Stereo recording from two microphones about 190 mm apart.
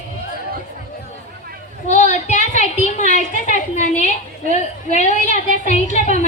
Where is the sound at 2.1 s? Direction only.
40° left (ahead or behind).